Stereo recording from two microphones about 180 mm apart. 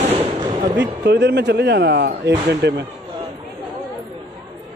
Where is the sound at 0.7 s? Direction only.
70° right (ahead or behind).